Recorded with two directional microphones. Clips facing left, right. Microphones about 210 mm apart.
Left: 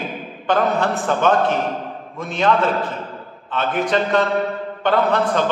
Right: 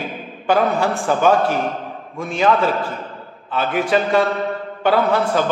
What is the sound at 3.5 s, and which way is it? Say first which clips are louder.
A man's voice: right 2 dB; 5° right (ahead or behind).